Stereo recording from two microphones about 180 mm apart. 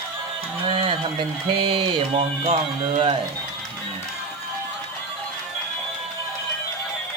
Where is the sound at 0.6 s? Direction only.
30° right (ahead or behind).